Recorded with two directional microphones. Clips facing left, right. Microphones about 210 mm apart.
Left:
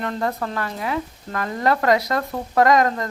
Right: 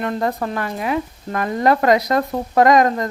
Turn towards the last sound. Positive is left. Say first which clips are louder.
# right 3 dB
turn(degrees=-20)  # may be behind; listen again after turning